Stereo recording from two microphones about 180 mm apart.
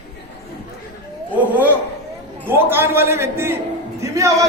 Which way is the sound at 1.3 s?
10° right (ahead or behind).